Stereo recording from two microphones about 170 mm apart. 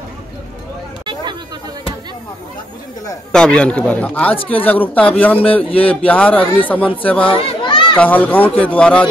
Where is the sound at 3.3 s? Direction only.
5° left (ahead or behind).